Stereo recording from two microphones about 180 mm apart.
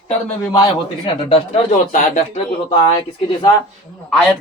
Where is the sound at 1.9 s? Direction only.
40° left (ahead or behind).